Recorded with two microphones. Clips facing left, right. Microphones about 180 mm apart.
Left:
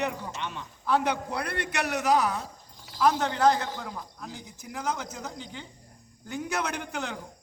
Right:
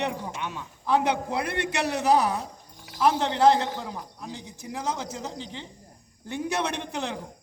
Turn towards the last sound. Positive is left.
turn(degrees=-30)  # may be behind; listen again after turning